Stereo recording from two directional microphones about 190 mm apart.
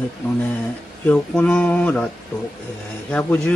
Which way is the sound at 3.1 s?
5° left (ahead or behind).